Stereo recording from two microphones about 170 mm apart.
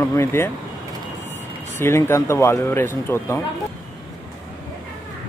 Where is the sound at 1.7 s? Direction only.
15° left (ahead or behind).